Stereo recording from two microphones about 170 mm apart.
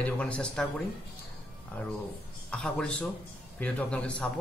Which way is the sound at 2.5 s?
5° left (ahead or behind).